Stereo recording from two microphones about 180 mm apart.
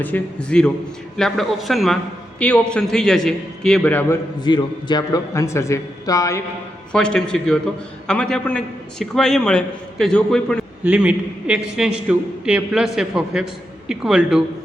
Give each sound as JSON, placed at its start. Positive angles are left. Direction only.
{"t": 0.0, "sound": "a man's voice", "side_deg": 5}
{"t": 4.4, "sound": "speech", "side_deg": 25}
{"t": 6.9, "sound": "a man's voice", "side_deg": 5}
{"t": 10.8, "sound": "a man's voice", "side_deg": -5}